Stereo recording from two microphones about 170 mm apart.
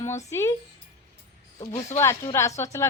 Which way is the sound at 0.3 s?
15° left (ahead or behind).